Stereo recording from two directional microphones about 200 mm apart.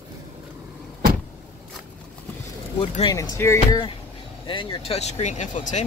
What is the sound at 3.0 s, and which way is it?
Speech, 20° left (ahead or behind).